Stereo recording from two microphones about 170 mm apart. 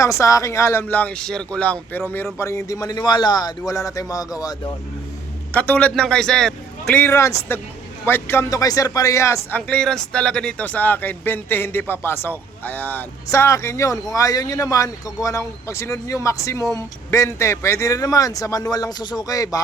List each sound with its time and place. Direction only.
0.0 s a man's voice: 20° left (ahead or behind)
5.5 s a man's voice: 10° left (ahead or behind)